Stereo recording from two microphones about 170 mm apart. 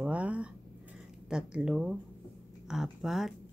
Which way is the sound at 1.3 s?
5° right (ahead or behind).